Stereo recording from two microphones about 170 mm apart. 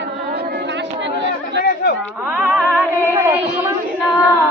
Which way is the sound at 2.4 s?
10° right (ahead or behind).